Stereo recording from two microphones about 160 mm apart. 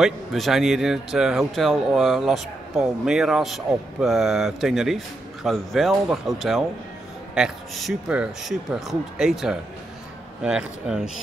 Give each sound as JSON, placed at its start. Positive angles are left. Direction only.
{"t": 0.0, "sound": "speech", "side_deg": 0}